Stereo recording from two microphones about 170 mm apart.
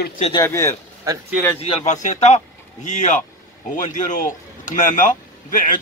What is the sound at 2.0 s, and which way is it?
A man's voice, 45° left (ahead or behind).